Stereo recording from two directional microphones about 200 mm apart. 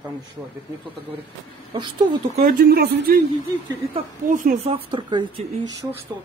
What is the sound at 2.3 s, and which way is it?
Speech, 45° right (ahead or behind).